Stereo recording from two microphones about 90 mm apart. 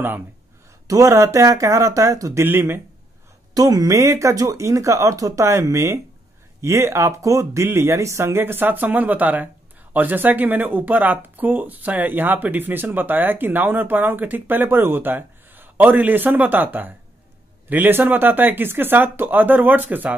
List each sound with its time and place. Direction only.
0.8 s speech: 35° right (ahead or behind)
2.4 s speech: 25° right (ahead or behind)
3.5 s speech: 40° right (ahead or behind); by 20.2 s 20° right (ahead or behind)